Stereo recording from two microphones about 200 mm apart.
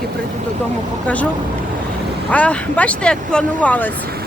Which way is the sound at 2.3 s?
5° left (ahead or behind).